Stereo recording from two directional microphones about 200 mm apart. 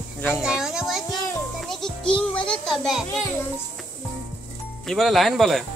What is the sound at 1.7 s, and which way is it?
Music, centre (ahead or behind).